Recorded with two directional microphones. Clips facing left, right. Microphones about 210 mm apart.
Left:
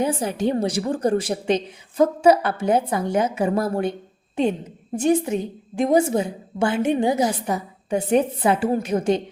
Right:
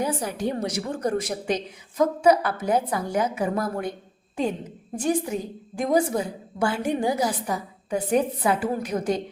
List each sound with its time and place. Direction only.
0.0 s a woman's voice: 25° left (ahead or behind)
4.9 s a woman's voice: 25° left (ahead or behind)